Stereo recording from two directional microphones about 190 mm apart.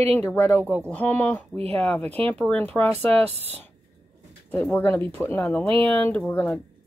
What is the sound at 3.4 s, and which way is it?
Speech, 10° left (ahead or behind).